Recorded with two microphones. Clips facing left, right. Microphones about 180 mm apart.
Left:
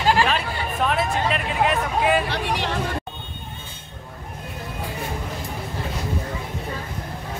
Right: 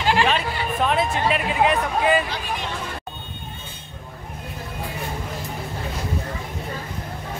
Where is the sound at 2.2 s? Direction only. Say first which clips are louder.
Left 4 dB; 70° left (ahead or behind).